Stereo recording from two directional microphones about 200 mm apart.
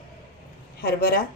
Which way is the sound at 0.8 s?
50° left (ahead or behind).